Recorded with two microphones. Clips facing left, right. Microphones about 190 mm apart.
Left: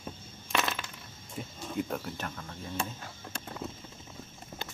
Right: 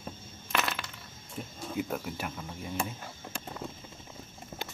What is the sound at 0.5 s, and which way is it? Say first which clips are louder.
Coin: left 1 dB; centre (ahead or behind).